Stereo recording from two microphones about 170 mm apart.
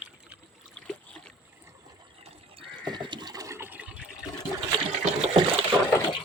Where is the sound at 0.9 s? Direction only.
5° left (ahead or behind).